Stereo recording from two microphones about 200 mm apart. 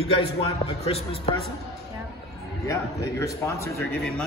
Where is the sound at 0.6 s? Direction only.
30° left (ahead or behind).